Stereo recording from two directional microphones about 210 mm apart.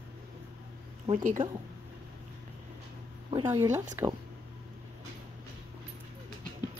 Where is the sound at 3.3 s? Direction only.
20° right (ahead or behind).